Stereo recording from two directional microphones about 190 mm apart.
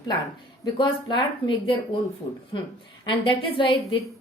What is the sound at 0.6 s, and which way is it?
A woman's voice, 25° left (ahead or behind).